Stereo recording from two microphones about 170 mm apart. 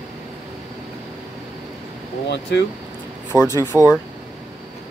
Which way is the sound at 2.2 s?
90° left.